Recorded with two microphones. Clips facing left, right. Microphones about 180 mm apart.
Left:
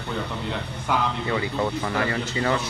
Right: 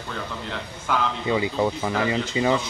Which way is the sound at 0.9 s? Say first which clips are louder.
Even; 15° left (ahead or behind).